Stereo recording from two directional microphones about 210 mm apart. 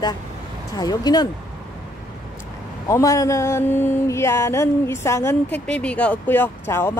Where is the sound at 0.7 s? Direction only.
20° left (ahead or behind).